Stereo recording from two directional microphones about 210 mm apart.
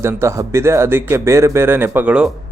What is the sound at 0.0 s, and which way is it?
Speech, 15° right (ahead or behind).